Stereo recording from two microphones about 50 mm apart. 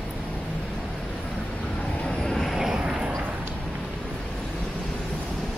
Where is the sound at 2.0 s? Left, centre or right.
Centre.